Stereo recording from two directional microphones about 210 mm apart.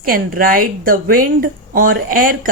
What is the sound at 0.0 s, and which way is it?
A woman's voice, 45° right (ahead or behind).